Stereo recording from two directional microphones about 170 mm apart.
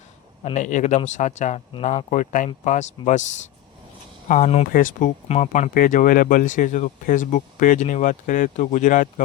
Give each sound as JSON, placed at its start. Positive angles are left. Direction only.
{"t": 0.5, "sound": "speech", "side_deg": 45}
{"t": 4.3, "sound": "speech", "side_deg": 45}